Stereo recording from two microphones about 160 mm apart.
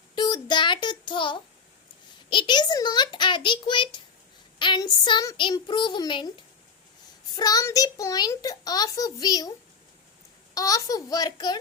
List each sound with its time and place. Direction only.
0.2 s child singing: 30° left (ahead or behind)
2.3 s a child's voice: 30° left (ahead or behind)
10.5 s a child's voice: 25° left (ahead or behind)